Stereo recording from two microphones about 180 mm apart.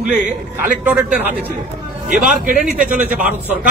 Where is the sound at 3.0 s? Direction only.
10° right (ahead or behind).